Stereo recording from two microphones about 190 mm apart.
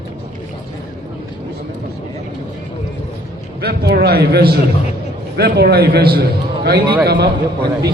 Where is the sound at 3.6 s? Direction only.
55° right (ahead or behind).